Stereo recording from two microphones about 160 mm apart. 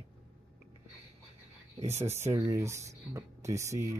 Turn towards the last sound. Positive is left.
turn(degrees=-20)  # may be behind; listen again after turning